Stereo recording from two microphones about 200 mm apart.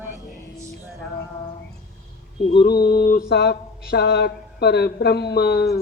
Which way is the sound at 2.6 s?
50° left (ahead or behind).